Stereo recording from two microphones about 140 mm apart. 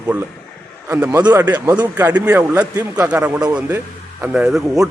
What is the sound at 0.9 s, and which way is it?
A man's voice, 15° right (ahead or behind).